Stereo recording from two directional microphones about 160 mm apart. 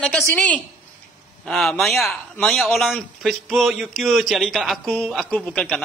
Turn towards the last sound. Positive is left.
turn(degrees=5)  # may be behind; listen again after turning